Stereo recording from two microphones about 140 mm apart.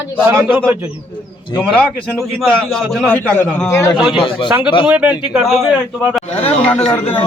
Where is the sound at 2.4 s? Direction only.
5° left (ahead or behind).